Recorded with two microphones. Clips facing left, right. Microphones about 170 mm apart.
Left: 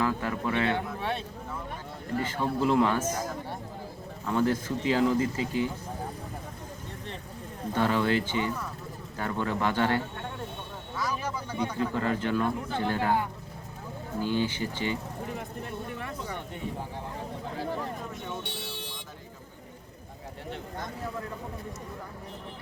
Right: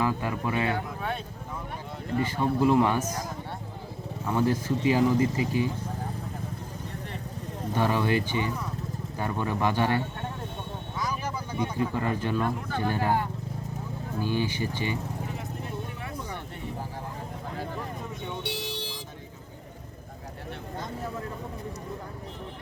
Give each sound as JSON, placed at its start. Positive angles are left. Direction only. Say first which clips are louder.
{"t": 0.0, "sound": "speech", "louder": "right 1 dB", "side_deg": -15}
{"t": 2.2, "sound": "speech", "louder": "right 3 dB", "side_deg": -10}
{"t": 4.3, "sound": "speech", "louder": "right 1 dB", "side_deg": -15}
{"t": 7.8, "sound": "speech", "louder": "even", "side_deg": -15}
{"t": 11.8, "sound": "speech", "louder": "even", "side_deg": -15}
{"t": 12.6, "sound": "speech", "louder": "right 1 dB", "side_deg": 20}
{"t": 12.9, "sound": "speech", "louder": "right 1 dB", "side_deg": -15}
{"t": 14.2, "sound": "speech", "louder": "even", "side_deg": -15}